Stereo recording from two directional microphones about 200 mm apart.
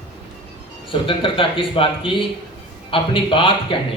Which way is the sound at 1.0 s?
25° left (ahead or behind).